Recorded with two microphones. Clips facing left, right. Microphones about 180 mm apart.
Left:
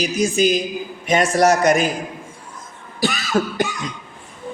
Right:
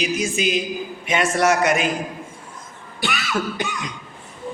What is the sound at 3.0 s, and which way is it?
Cough, 40° left (ahead or behind).